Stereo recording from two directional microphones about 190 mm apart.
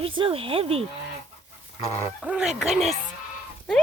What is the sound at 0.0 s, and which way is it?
Speech, 30° right (ahead or behind).